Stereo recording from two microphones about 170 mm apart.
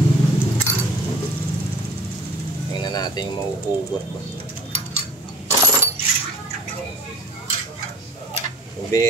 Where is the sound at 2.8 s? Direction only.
25° left (ahead or behind).